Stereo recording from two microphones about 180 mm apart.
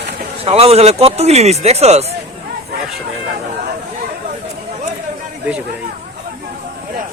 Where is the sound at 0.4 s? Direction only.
35° right (ahead or behind).